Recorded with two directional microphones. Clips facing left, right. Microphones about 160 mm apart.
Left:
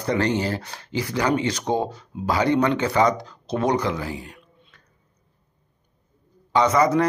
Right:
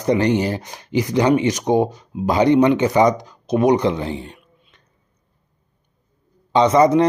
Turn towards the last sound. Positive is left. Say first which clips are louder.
# right 5 dB
turn(degrees=-20)  # may be behind; listen again after turning